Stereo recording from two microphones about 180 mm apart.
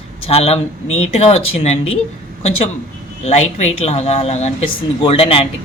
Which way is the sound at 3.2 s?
40° left (ahead or behind).